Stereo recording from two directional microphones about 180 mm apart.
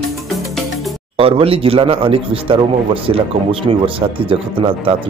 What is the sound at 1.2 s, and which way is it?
A man's voice, 30° right (ahead or behind).